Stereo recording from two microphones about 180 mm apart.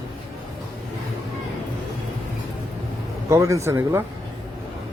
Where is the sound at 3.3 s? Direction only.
15° right (ahead or behind).